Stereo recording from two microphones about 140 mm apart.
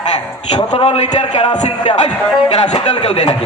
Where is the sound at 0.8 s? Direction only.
50° left (ahead or behind).